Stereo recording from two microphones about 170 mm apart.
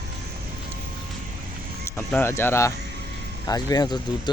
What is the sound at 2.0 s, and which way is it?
Speech, 10° left (ahead or behind).